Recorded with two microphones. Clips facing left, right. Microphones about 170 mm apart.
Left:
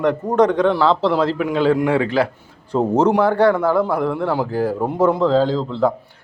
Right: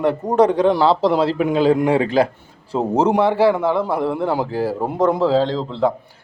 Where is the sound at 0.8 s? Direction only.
30° right (ahead or behind).